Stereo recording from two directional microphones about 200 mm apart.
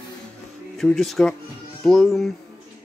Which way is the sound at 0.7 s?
Centre (ahead or behind).